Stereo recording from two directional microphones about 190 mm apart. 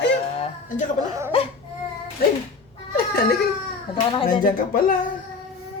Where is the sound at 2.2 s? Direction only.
50° left (ahead or behind).